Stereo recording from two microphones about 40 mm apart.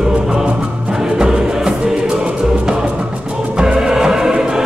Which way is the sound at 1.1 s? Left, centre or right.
Centre.